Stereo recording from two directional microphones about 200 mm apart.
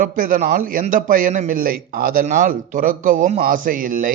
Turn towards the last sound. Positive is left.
turn(degrees=-45)  # may be behind; listen again after turning